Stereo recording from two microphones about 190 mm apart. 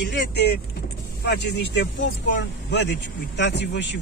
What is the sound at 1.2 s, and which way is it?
A man's voice, 60° left (ahead or behind).